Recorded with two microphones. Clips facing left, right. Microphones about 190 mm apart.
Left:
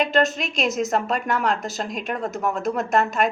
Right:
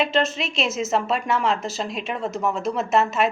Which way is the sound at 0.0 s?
Centre (ahead or behind).